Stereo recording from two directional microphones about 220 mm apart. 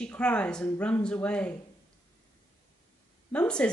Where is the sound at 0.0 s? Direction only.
5° left (ahead or behind).